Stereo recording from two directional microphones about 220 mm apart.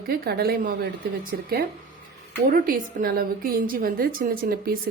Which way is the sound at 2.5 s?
40° right (ahead or behind).